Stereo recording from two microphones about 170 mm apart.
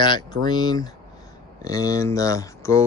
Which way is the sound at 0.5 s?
25° left (ahead or behind).